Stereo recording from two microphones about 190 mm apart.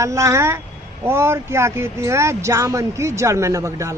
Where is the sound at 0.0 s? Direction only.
15° right (ahead or behind).